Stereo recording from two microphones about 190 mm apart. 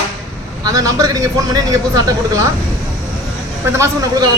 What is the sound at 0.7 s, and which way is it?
A man's voice, 20° right (ahead or behind).